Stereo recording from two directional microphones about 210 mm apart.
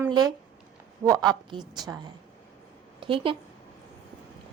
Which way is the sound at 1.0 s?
20° right (ahead or behind).